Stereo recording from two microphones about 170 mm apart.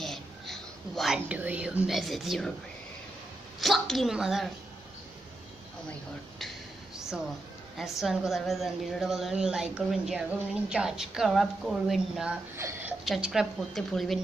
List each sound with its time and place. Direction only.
0.0 s whispering: centre (ahead or behind)
3.6 s a woman's voice: centre (ahead or behind)
7.7 s a woman's voice: centre (ahead or behind)
12.5 s a sound: 15° right (ahead or behind)
13.0 s a woman's voice: centre (ahead or behind)